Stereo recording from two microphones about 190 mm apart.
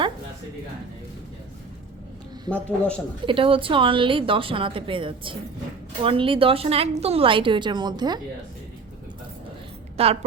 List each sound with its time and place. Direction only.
2.6 s speech: 5° left (ahead or behind)
3.2 s a woman's voice: 30° right (ahead or behind)
10.0 s a woman's voice: 30° right (ahead or behind)